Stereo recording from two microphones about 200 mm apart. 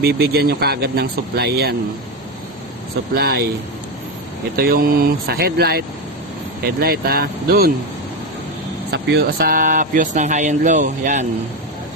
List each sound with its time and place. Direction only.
0.0 s speech: 50° right (ahead or behind)
3.2 s speech: 50° right (ahead or behind)
4.5 s speech: 50° right (ahead or behind)
8.9 s speech: 55° right (ahead or behind); by 11.3 s 40° right (ahead or behind)